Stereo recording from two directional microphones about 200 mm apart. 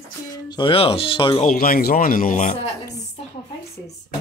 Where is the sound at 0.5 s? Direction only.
25° left (ahead or behind).